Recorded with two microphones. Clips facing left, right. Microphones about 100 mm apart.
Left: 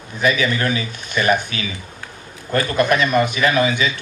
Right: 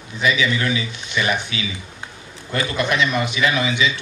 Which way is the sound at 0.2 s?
45° left (ahead or behind).